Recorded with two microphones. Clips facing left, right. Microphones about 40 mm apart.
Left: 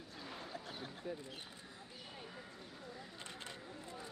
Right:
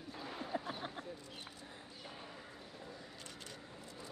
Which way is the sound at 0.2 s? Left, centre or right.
Centre.